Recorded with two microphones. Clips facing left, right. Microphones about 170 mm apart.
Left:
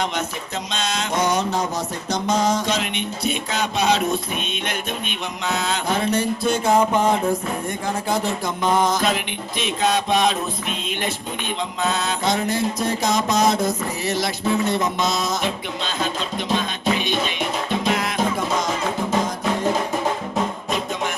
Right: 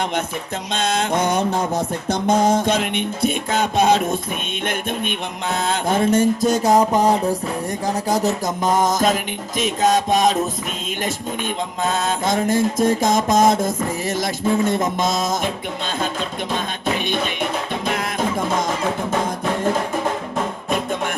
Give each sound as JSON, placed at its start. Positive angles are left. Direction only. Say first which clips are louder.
{"t": 0.7, "sound": "mantra", "louder": "right 5 dB", "side_deg": -55}
{"t": 11.9, "sound": "mantra", "louder": "right 2 dB", "side_deg": -50}
{"t": 16.6, "sound": "music", "louder": "even", "side_deg": -55}